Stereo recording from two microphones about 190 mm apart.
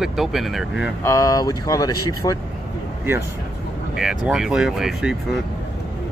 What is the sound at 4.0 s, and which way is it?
Speech, 5° right (ahead or behind).